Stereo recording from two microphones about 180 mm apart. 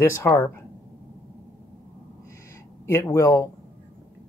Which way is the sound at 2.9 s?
15° left (ahead or behind).